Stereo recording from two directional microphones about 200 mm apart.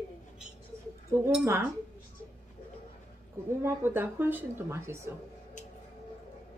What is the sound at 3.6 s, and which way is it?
Speech, 10° right (ahead or behind).